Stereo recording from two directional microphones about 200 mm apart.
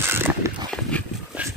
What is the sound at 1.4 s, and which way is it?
Music, 5° right (ahead or behind).